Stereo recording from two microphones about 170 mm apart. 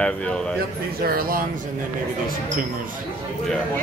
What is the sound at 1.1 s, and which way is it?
Speech, 60° right (ahead or behind).